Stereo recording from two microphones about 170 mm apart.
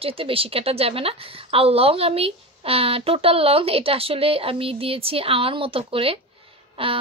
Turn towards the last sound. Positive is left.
turn(degrees=-35)  # may be behind; listen again after turning